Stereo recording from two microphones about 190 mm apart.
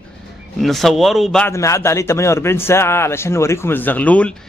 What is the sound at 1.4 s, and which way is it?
A man's voice, 15° left (ahead or behind).